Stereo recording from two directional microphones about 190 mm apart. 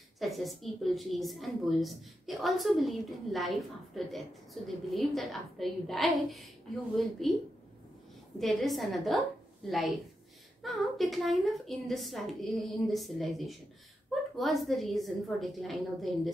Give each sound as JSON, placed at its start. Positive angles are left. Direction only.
{"t": 0.2, "sound": "a woman's voice", "side_deg": 0}
{"t": 8.4, "sound": "a woman's voice", "side_deg": 0}